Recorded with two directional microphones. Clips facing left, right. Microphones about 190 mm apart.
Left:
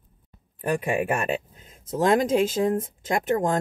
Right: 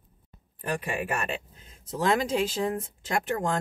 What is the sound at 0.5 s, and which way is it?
Speech, 50° left (ahead or behind).